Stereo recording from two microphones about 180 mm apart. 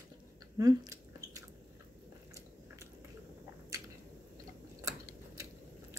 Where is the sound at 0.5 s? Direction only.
20° right (ahead or behind).